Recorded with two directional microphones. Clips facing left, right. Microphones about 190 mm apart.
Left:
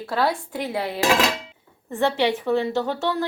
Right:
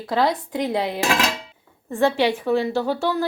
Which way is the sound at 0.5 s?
5° left (ahead or behind).